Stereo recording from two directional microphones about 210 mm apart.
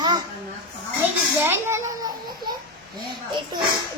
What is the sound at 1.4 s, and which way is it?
Speech, 10° right (ahead or behind).